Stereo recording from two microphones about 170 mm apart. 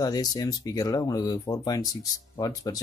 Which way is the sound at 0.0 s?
25° left (ahead or behind).